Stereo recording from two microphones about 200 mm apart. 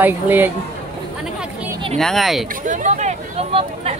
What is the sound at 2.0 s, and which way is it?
Speech, centre (ahead or behind).